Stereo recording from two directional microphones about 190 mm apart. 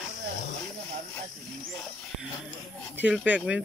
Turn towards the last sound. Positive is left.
turn(degrees=-5)  # may be behind; listen again after turning